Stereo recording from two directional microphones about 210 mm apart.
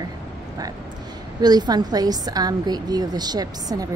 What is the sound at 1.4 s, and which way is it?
A woman's voice, 20° right (ahead or behind).